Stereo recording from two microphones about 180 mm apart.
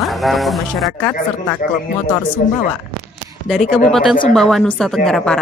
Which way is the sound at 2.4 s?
50° left (ahead or behind).